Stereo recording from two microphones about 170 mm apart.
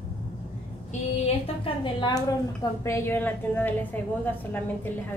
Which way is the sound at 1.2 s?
30° left (ahead or behind).